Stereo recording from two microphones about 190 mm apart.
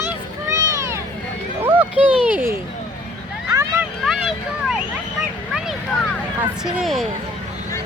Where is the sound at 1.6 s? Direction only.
10° right (ahead or behind).